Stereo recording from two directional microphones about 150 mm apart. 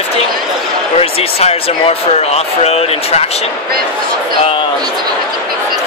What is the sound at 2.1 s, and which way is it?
Speech, 45° left (ahead or behind).